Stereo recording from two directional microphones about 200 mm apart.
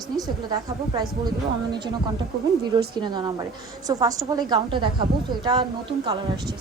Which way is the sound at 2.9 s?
20° right (ahead or behind).